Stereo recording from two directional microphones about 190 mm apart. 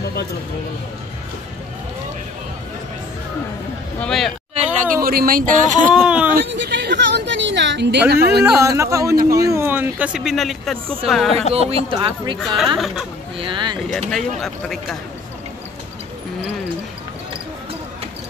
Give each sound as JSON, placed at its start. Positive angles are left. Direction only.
{"t": 4.0, "sound": "a sound", "side_deg": 0}
{"t": 4.7, "sound": "speech", "side_deg": -50}
{"t": 5.9, "sound": "speech", "side_deg": -5}
{"t": 6.4, "sound": "a sound", "side_deg": -70}
{"t": 8.5, "sound": "speech", "side_deg": -15}
{"t": 11.5, "sound": "speech", "side_deg": -30}
{"t": 12.7, "sound": "speech", "side_deg": 0}
{"t": 13.4, "sound": "speech", "side_deg": -25}
{"t": 13.8, "sound": "speech", "side_deg": 0}